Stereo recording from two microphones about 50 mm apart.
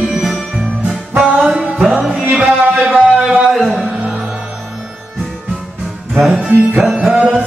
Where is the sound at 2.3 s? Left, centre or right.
Right.